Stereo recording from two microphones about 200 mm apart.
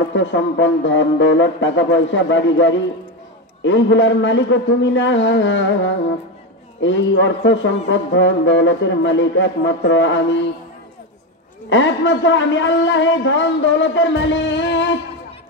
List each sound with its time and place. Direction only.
0.1 s music: 65° left (ahead or behind)
3.6 s speech: 65° left (ahead or behind)
6.8 s music: 70° left (ahead or behind)
11.7 s speech: 65° left (ahead or behind)